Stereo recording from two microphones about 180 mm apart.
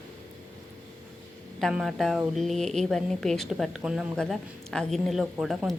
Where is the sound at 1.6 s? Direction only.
Centre (ahead or behind).